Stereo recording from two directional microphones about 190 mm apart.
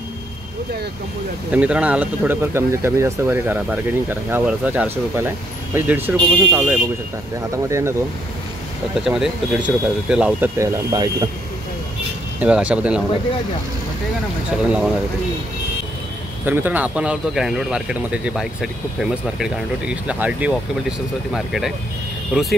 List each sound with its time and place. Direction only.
1.5 s speech: 5° right (ahead or behind)
9.0 s speech: 5° right (ahead or behind)
10.6 s speech: 20° right (ahead or behind)
12.4 s speech: 5° right (ahead or behind)
14.6 s speech: 5° right (ahead or behind)
16.4 s speech: 10° right (ahead or behind)